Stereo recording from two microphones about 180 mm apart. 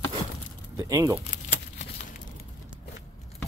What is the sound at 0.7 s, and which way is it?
Speech, 20° right (ahead or behind).